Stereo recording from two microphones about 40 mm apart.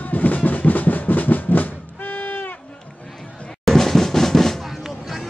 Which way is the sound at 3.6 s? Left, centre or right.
Centre.